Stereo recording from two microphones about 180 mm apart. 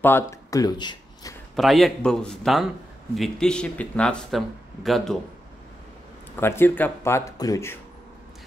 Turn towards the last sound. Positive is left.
turn(degrees=15)  # may be behind; listen again after turning